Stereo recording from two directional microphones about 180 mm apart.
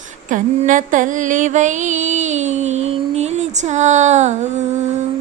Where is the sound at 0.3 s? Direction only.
45° right (ahead or behind).